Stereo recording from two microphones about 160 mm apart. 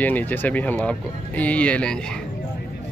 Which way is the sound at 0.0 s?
10° left (ahead or behind).